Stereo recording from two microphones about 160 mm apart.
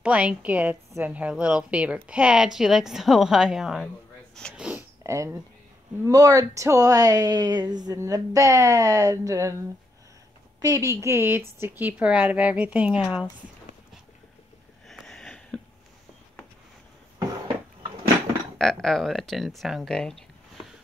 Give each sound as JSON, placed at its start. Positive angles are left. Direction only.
{"t": 0.0, "sound": "a woman's voice", "side_deg": -5}
{"t": 5.0, "sound": "a woman's voice", "side_deg": -20}
{"t": 10.6, "sound": "a woman's voice", "side_deg": -20}
{"t": 14.9, "sound": "sniff", "side_deg": 0}
{"t": 18.6, "sound": "speech", "side_deg": 0}